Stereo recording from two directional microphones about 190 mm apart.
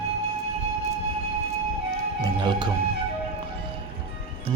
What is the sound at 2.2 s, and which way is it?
Music, 20° right (ahead or behind).